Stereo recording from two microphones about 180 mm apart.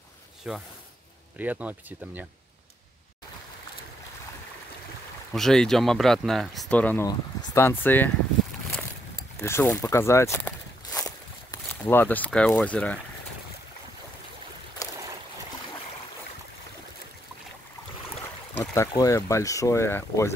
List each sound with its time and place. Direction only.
0.5 s speech: 5° right (ahead or behind)
5.3 s speech: centre (ahead or behind)
9.4 s zipper: 15° left (ahead or behind)
11.8 s speech: 10° left (ahead or behind)
14.8 s boat: 20° left (ahead or behind)
18.6 s speech: 20° left (ahead or behind)